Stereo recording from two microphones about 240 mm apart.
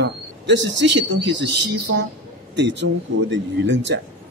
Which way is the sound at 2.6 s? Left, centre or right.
Right.